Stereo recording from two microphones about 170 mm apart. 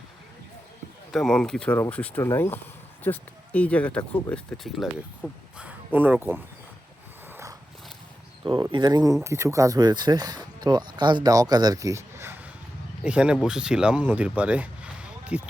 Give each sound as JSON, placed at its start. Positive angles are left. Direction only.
{"t": 1.1, "sound": "speech", "side_deg": 5}
{"t": 8.7, "sound": "speech", "side_deg": -25}